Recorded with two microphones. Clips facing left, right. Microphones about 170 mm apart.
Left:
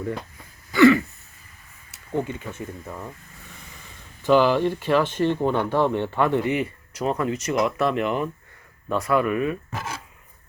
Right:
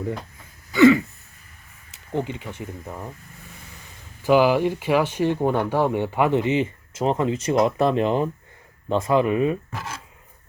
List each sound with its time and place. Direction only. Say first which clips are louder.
0.7 s throat clearing: right 1 dB; 20° right (ahead or behind)
2.1 s speech: even; 20° right (ahead or behind)
4.2 s speech: right 1 dB; 10° right (ahead or behind); by 9.6 s 25° right (ahead or behind)